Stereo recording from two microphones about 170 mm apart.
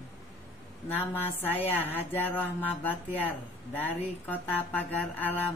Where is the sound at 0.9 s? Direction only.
10° left (ahead or behind).